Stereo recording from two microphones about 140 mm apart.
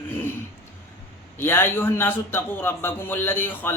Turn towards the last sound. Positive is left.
turn(degrees=15)  # may be behind; listen again after turning